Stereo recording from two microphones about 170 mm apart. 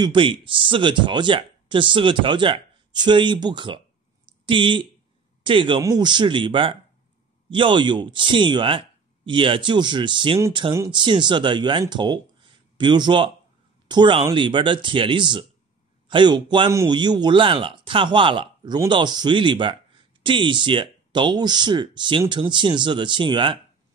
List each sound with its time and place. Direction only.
0.0 s speech: 30° right (ahead or behind)